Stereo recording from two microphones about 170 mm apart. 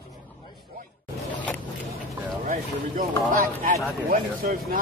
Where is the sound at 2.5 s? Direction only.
50° right (ahead or behind).